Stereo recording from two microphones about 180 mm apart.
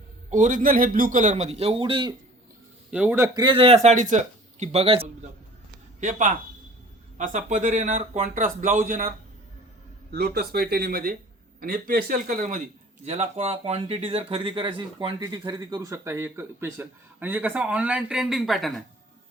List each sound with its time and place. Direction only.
0.3 s speech: 40° right (ahead or behind)
2.9 s a man's voice: 10° right (ahead or behind)
3.3 s speech: 25° right (ahead or behind)
3.8 s speech: 45° right (ahead or behind)
6.0 s speech: 45° right (ahead or behind)
10.1 s speech: 60° right (ahead or behind); by 18.7 s centre (ahead or behind)